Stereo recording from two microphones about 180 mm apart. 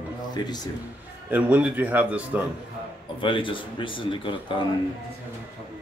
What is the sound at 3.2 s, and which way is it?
A man's voice, 30° left (ahead or behind).